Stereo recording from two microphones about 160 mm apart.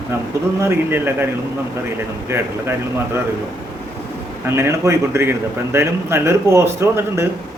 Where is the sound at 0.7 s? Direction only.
15° right (ahead or behind).